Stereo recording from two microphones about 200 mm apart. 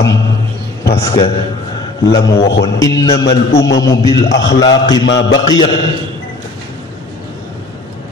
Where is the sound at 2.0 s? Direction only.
60° left (ahead or behind).